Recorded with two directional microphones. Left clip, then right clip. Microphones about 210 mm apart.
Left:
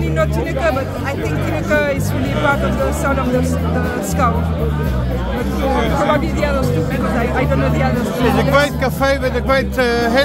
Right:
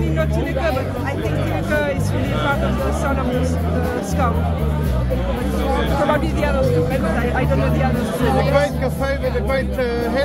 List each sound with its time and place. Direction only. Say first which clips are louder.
6.1 s speech: left 2 dB; 5° left (ahead or behind)
8.5 s speech: left 4 dB; 40° left (ahead or behind)